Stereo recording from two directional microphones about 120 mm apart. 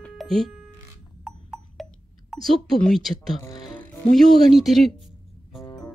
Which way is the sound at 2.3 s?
5° left (ahead or behind).